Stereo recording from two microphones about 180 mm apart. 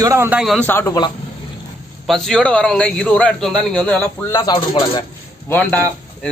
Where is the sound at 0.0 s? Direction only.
15° right (ahead or behind); by 0.7 s centre (ahead or behind).